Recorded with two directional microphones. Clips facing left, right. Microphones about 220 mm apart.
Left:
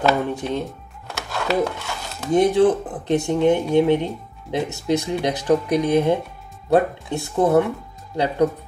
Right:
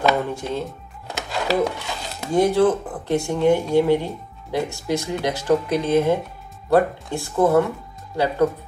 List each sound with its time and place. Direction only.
0.3 s speech: 20° left (ahead or behind)
1.0 s chopping: 15° right (ahead or behind)
2.3 s speech: 20° left (ahead or behind)